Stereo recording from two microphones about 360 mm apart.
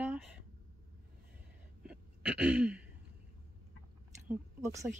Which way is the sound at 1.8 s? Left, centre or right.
Centre.